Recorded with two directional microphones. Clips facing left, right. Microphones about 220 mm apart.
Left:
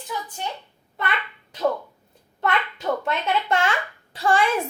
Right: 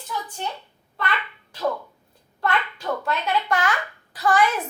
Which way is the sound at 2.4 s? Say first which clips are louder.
Left 1 dB; 20° left (ahead or behind).